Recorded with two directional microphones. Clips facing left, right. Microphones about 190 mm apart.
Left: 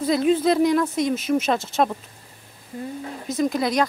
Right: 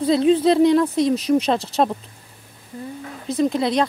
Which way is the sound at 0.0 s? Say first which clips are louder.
Right 3 dB; 30° right (ahead or behind).